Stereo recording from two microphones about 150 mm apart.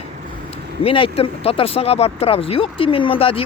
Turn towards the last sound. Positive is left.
turn(degrees=40)  # may be behind; listen again after turning